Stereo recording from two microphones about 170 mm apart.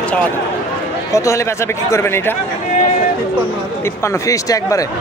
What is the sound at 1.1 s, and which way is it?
Speech, 15° left (ahead or behind).